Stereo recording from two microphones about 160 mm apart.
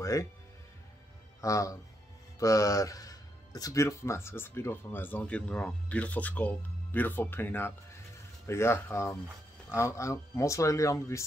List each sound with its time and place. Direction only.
0.0 s speech: 20° left (ahead or behind)
1.4 s speech: 20° left (ahead or behind)